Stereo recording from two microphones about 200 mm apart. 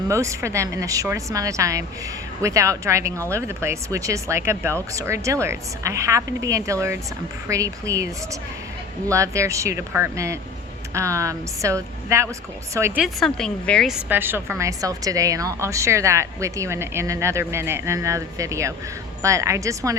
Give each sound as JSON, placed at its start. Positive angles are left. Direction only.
{"t": 0.1, "sound": "a woman's voice", "side_deg": -15}
{"t": 13.0, "sound": "a woman's voice", "side_deg": 0}